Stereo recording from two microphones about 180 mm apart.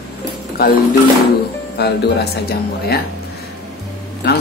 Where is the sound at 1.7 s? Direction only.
65° left (ahead or behind).